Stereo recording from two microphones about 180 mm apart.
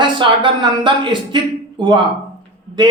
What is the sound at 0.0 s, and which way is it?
Speech, 25° right (ahead or behind).